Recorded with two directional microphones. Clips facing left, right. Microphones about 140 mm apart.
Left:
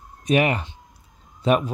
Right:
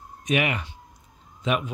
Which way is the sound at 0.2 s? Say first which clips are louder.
Left 5 dB; 35° left (ahead or behind).